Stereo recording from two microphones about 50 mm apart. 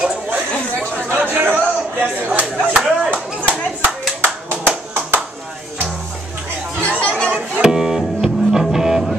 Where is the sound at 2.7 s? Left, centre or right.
Centre.